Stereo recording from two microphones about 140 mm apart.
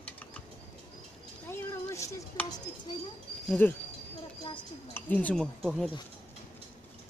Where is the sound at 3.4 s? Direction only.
10° left (ahead or behind).